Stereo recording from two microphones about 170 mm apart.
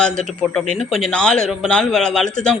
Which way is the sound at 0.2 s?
5° left (ahead or behind).